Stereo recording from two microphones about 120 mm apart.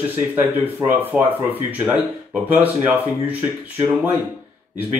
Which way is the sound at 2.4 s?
15° right (ahead or behind).